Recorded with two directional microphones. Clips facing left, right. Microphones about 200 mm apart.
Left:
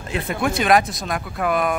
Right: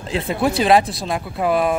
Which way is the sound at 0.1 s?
30° right (ahead or behind).